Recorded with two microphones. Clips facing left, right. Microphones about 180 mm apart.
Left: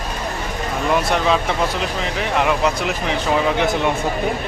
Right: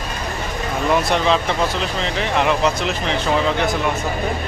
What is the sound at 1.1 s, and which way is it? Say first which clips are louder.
Speech: even; 5° left (ahead or behind).